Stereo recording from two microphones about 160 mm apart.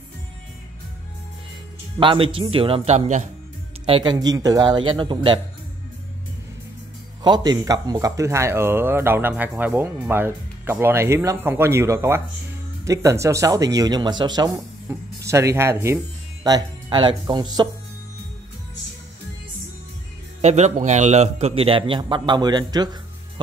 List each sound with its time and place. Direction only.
2.0 s a man's voice: 30° right (ahead or behind)
3.8 s speech: 30° right (ahead or behind)
7.2 s speech: 25° right (ahead or behind)
16.4 s speech: 25° right (ahead or behind)
20.4 s a man's voice: 45° right (ahead or behind); by 22.8 s 25° right (ahead or behind)